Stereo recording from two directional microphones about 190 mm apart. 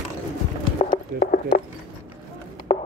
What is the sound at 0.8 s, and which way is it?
Clip-clop, 50° left (ahead or behind).